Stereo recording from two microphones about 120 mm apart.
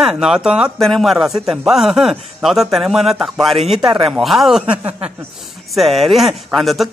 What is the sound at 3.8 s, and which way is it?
Speech, 40° right (ahead or behind).